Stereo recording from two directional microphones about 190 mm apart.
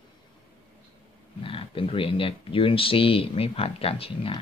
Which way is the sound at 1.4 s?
30° left (ahead or behind).